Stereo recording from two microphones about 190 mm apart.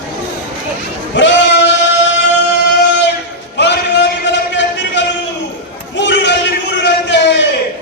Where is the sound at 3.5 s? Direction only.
65° left (ahead or behind).